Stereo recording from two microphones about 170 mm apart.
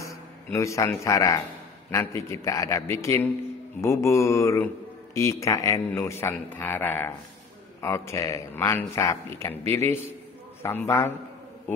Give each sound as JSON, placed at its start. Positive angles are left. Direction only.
{"t": 0.0, "sound": "speech", "side_deg": 15}